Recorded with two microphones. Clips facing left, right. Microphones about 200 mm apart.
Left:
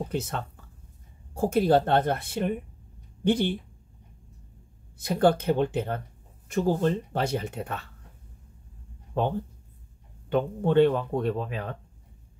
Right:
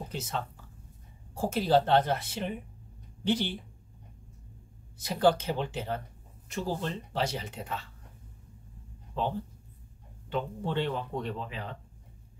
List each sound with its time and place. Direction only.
0.1 s speech: 60° left (ahead or behind)
5.0 s speech: 55° left (ahead or behind)
9.1 s speech: 55° left (ahead or behind)
10.3 s speech: 55° left (ahead or behind)